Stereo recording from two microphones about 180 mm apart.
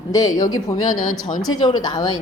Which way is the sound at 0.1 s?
20° left (ahead or behind).